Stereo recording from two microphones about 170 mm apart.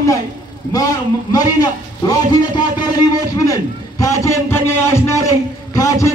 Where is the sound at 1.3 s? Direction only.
20° left (ahead or behind).